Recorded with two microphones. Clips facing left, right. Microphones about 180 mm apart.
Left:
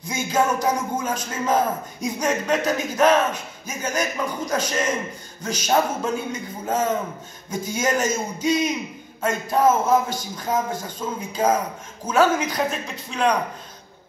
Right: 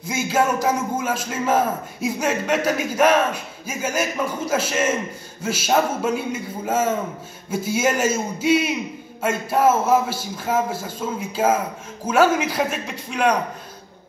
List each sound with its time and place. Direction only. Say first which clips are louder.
0.0 s a man's voice: right 1 dB; 5° right (ahead or behind)